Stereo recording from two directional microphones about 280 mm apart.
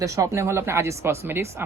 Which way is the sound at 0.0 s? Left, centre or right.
Centre.